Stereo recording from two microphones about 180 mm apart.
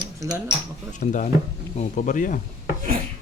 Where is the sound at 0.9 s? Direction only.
45° left (ahead or behind).